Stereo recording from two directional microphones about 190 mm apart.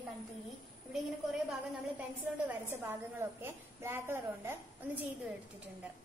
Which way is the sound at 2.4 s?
10° right (ahead or behind).